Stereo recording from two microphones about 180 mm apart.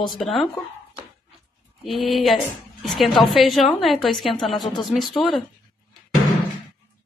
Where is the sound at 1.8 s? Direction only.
Centre (ahead or behind).